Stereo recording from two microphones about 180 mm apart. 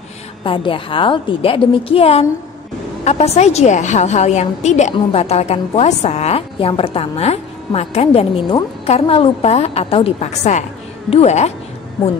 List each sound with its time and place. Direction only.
0.4 s a woman's voice: 30° left (ahead or behind)